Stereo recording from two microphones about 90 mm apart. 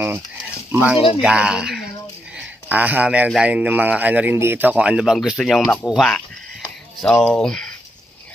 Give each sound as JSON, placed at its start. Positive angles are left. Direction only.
{"t": 0.7, "sound": "speech", "side_deg": -15}
{"t": 2.3, "sound": "a sound", "side_deg": -15}
{"t": 3.4, "sound": "speech", "side_deg": -15}